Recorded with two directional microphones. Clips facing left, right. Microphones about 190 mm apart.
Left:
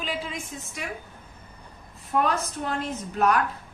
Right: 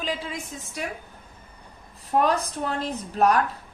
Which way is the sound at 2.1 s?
35° right (ahead or behind).